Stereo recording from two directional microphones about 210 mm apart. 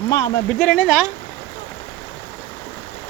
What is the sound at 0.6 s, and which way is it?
Speech, 5° left (ahead or behind).